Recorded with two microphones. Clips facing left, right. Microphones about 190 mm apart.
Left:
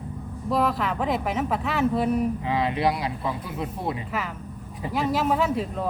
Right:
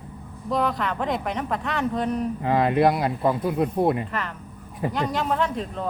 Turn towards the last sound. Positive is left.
turn(degrees=5)  # may be behind; listen again after turning